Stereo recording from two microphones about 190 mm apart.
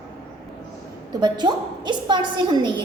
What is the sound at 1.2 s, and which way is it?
A woman's voice, 20° right (ahead or behind).